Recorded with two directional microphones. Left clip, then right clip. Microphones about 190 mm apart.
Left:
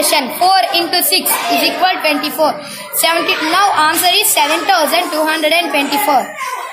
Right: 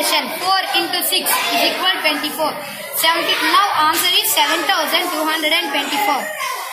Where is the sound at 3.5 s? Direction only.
65° left (ahead or behind).